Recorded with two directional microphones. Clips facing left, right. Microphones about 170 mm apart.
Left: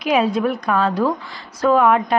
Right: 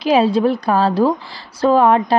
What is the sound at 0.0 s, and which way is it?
A woman's voice, 30° right (ahead or behind).